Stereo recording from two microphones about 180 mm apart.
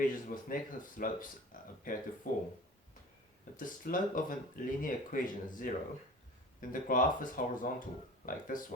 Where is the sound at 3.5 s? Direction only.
50° left (ahead or behind).